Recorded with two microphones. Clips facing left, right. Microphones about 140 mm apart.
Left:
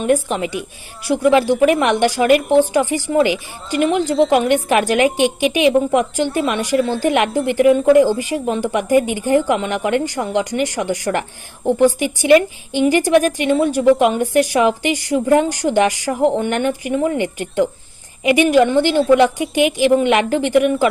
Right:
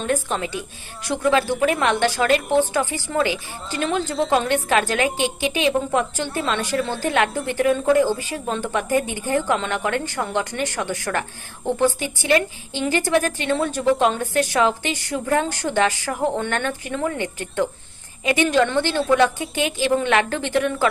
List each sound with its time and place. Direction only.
0.0 s a woman's voice: 15° left (ahead or behind)